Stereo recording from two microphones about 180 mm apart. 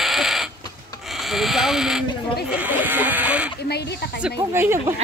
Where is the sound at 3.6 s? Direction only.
65° left (ahead or behind).